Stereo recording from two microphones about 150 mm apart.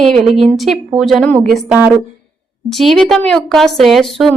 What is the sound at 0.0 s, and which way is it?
A woman's voice, centre (ahead or behind).